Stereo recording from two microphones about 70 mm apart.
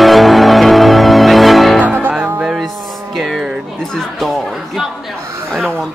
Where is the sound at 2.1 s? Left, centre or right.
Centre.